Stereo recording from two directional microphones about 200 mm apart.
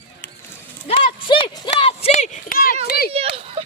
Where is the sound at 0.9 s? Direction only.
25° left (ahead or behind); by 2.7 s 45° left (ahead or behind).